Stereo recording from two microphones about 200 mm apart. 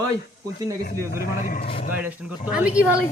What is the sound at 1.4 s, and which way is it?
Speech, 40° left (ahead or behind).